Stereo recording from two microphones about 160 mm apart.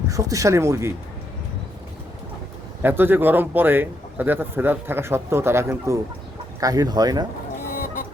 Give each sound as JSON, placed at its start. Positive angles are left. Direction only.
{"t": 0.1, "sound": "speech", "side_deg": -20}
{"t": 2.8, "sound": "a man's voice", "side_deg": -15}